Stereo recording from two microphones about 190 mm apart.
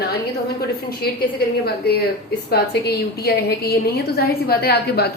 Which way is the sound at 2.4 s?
55° left (ahead or behind).